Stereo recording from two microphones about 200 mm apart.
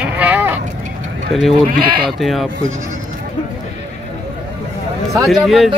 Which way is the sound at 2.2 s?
Centre (ahead or behind).